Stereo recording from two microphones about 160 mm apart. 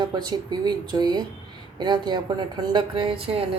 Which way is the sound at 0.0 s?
25° right (ahead or behind).